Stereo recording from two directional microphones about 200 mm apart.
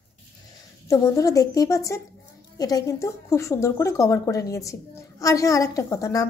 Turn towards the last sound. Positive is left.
turn(degrees=15)  # may be behind; listen again after turning